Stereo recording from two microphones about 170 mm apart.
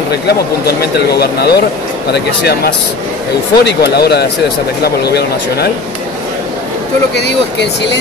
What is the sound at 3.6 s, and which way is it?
Speech, 80° left.